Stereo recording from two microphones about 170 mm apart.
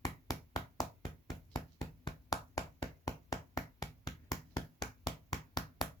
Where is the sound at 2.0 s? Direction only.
20° left (ahead or behind).